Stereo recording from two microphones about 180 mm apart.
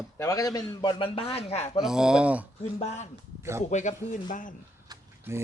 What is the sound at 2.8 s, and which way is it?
Speech, 40° left (ahead or behind).